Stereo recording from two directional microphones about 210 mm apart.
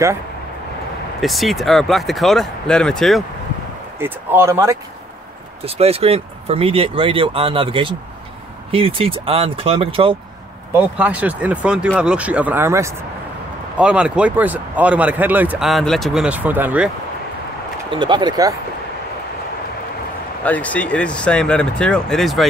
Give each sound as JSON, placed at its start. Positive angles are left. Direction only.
{"t": 1.2, "sound": "speech", "side_deg": 0}
{"t": 4.0, "sound": "speech", "side_deg": -10}
{"t": 5.7, "sound": "speech", "side_deg": -30}
{"t": 10.7, "sound": "speech", "side_deg": -5}
{"t": 17.9, "sound": "speech", "side_deg": -20}
{"t": 20.4, "sound": "speech", "side_deg": 5}